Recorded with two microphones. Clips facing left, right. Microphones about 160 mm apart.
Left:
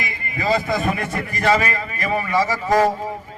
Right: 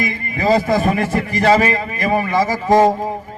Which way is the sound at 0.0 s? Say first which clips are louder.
Right 6 dB; 45° right (ahead or behind).